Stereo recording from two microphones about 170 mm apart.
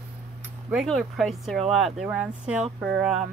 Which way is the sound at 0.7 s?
Centre (ahead or behind).